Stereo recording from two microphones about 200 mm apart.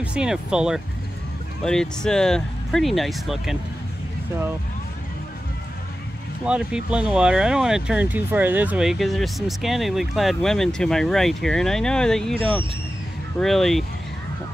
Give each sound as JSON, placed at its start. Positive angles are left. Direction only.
{"t": 0.0, "sound": "speech", "side_deg": -5}
{"t": 6.4, "sound": "speech", "side_deg": -5}
{"t": 12.4, "sound": "speech", "side_deg": -25}
{"t": 13.4, "sound": "speech", "side_deg": 0}